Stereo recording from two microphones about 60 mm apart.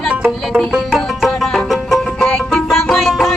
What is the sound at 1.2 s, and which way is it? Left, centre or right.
Music, centre.